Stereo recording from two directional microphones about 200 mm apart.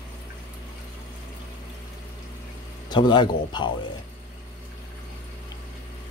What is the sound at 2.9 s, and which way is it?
Speech, 20° left (ahead or behind).